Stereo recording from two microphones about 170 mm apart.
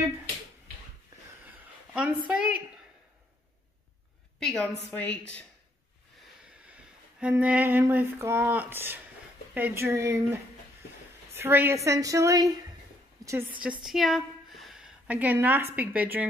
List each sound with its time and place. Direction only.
2.2 s a woman's voice: 5° right (ahead or behind)
4.4 s a woman's voice: 5° left (ahead or behind)
6.6 s a sound: 5° right (ahead or behind)
9.5 s a woman's voice: 10° right (ahead or behind)
13.8 s a woman's voice: centre (ahead or behind)